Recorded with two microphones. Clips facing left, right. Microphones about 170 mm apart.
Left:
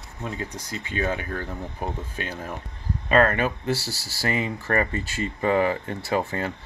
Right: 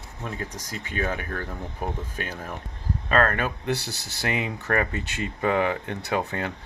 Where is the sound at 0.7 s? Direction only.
50° right (ahead or behind).